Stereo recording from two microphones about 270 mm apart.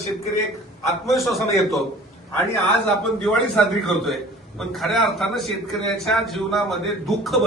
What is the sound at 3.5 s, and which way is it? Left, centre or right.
A man's voice, centre.